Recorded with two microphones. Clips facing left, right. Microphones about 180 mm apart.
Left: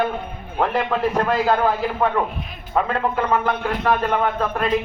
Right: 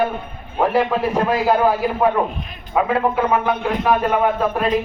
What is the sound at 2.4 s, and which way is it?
Speech, centre (ahead or behind).